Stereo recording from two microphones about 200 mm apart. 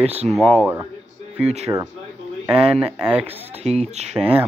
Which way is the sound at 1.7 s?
15° right (ahead or behind).